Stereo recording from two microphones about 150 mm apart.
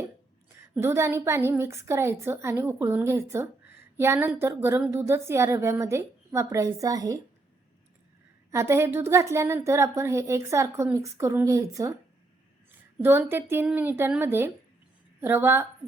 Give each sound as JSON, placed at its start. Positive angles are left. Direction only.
{"t": 0.6, "sound": "a woman's voice", "side_deg": -15}
{"t": 8.4, "sound": "speech", "side_deg": -20}
{"t": 13.0, "sound": "a woman's voice", "side_deg": -15}